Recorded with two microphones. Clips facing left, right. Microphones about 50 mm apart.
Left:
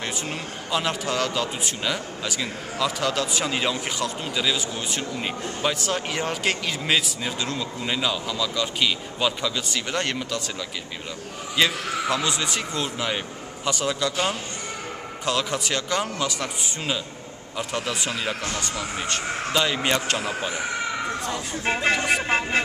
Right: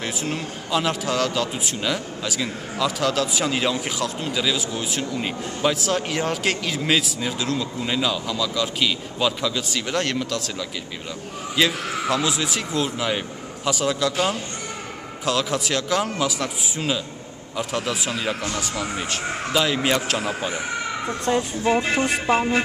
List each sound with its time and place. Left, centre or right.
0.0 s a man's voice: centre
11.5 s a man's voice: centre
21.7 s speech: left